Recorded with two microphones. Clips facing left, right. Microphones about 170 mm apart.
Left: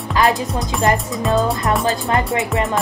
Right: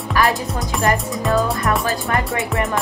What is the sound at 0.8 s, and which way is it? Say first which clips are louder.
Speech: left 1 dB; 20° left (ahead or behind).